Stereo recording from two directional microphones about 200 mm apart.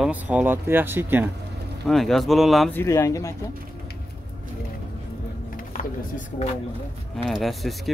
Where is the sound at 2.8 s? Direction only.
15° left (ahead or behind).